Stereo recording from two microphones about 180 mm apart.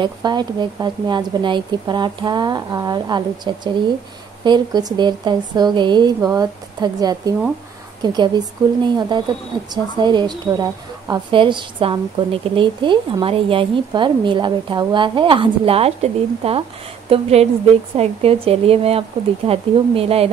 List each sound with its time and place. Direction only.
0.0 s a woman's voice: 25° right (ahead or behind)